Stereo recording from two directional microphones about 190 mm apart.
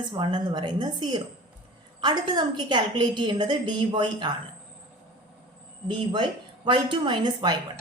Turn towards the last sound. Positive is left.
turn(degrees=-25)  # may be behind; listen again after turning